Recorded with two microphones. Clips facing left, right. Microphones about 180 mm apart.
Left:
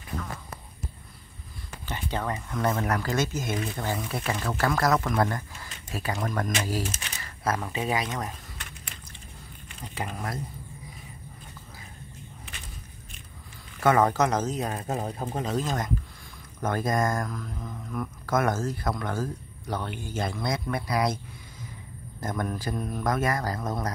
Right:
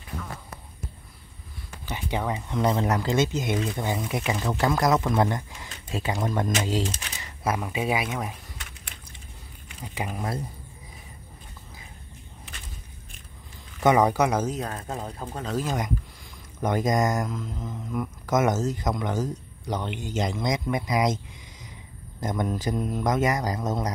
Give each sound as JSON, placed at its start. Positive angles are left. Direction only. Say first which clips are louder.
{"t": 1.9, "sound": "speech", "louder": "right 2 dB", "side_deg": -10}
{"t": 9.9, "sound": "speech", "louder": "right 3 dB", "side_deg": -15}
{"t": 13.7, "sound": "speech", "louder": "right 2 dB", "side_deg": -15}
{"t": 14.6, "sound": "speech", "louder": "left 2 dB", "side_deg": 15}
{"t": 15.4, "sound": "speech", "louder": "right 2 dB", "side_deg": -5}
{"t": 22.2, "sound": "speech", "louder": "right 3 dB", "side_deg": -20}